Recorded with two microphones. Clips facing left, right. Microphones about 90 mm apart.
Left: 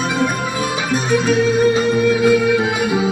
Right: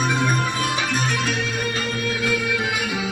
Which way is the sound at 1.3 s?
30° left (ahead or behind).